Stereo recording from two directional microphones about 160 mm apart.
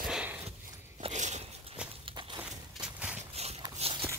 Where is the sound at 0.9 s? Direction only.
45° right (ahead or behind).